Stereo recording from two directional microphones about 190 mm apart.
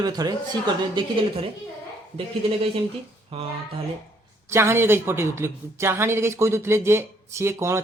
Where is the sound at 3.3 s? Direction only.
30° right (ahead or behind).